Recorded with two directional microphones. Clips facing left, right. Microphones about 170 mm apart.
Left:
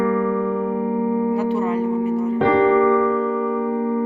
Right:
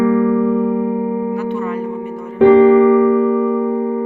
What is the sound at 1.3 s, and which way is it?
Music, 35° left (ahead or behind).